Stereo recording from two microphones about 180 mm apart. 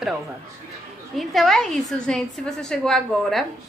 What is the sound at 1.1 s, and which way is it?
A woman's voice, centre (ahead or behind).